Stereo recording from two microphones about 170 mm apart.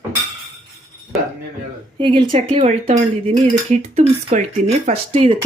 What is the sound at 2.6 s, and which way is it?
Speech, 40° right (ahead or behind).